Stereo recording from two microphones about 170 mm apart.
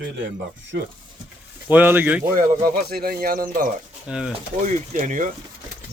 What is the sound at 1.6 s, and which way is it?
Speech, 10° right (ahead or behind).